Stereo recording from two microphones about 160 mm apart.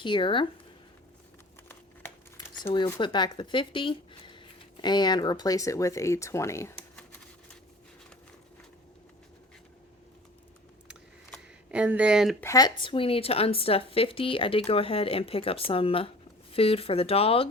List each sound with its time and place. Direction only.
0.0 s speech: 30° left (ahead or behind)
2.7 s speech: 30° left (ahead or behind)
6.7 s typing: 5° left (ahead or behind)
11.7 s speech: 10° right (ahead or behind)
12.4 s speech: 20° left (ahead or behind); by 17.5 s 35° left (ahead or behind)